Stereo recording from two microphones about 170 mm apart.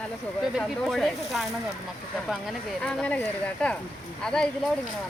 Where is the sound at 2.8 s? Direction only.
10° left (ahead or behind).